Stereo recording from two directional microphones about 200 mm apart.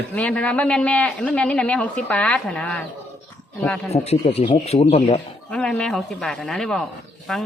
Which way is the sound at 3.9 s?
30° left (ahead or behind).